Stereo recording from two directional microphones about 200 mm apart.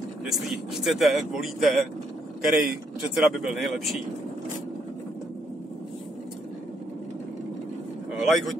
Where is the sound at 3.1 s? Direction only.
Centre (ahead or behind).